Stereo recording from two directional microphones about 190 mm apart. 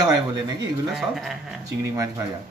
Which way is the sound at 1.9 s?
15° right (ahead or behind).